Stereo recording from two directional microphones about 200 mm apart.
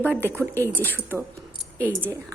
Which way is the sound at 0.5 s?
10° left (ahead or behind).